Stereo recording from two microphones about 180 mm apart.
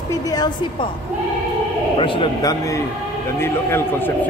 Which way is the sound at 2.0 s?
30° left (ahead or behind).